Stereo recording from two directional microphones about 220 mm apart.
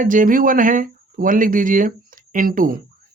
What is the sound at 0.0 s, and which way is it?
Speech, 35° right (ahead or behind).